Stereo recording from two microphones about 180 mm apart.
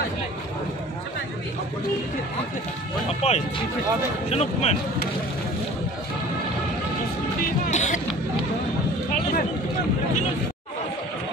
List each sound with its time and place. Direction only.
3.2 s music: 35° left (ahead or behind)
4.3 s a man's voice: 35° left (ahead or behind)
7.6 s hubbub: 40° left (ahead or behind)